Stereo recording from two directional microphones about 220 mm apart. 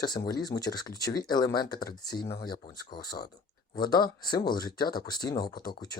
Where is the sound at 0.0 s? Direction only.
20° left (ahead or behind).